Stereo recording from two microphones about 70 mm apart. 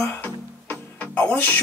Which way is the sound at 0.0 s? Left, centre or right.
Left.